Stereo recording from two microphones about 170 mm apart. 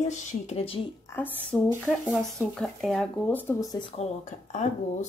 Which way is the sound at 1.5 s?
Centre (ahead or behind).